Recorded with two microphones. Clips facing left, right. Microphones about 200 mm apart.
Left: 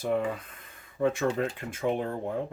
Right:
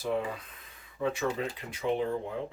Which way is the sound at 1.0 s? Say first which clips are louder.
Left 4 dB; 50° left (ahead or behind).